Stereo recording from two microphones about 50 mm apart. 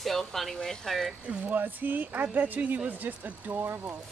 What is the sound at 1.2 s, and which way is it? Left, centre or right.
Speech, right.